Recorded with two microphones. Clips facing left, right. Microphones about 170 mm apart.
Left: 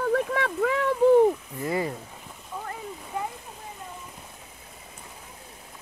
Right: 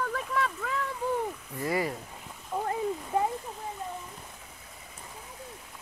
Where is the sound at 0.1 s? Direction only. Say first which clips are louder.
Left 6 dB; 65° left (ahead or behind).